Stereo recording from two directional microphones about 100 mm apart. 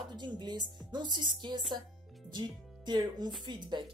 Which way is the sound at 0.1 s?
45° right (ahead or behind).